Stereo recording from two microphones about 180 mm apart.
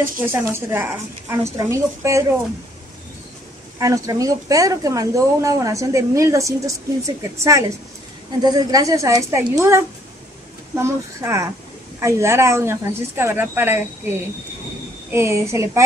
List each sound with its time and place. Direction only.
0.0 s a woman's voice: 15° right (ahead or behind)
3.8 s a woman's voice: 20° right (ahead or behind)
10.8 s a woman's voice: 15° right (ahead or behind)